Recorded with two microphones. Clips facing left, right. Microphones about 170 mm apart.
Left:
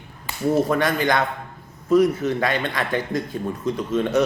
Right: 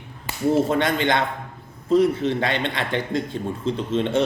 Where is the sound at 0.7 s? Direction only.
25° right (ahead or behind).